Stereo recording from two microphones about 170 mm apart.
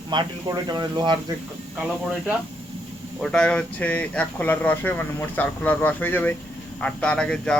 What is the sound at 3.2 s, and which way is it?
Speech, 5° left (ahead or behind).